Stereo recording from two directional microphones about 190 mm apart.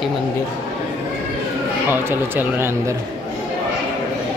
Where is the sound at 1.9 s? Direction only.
10° right (ahead or behind).